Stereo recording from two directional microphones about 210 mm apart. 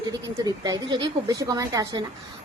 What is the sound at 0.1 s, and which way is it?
A woman's voice, 20° right (ahead or behind).